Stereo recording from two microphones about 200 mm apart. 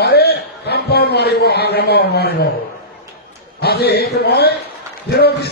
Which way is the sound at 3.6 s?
55° left (ahead or behind).